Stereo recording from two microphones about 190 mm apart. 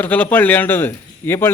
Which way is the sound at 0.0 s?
10° left (ahead or behind).